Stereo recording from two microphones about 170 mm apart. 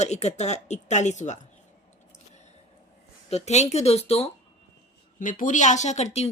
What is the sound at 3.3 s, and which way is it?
Speech, 40° left (ahead or behind).